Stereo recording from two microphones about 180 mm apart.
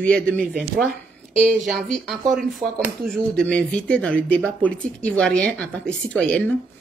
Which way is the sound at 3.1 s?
5° left (ahead or behind).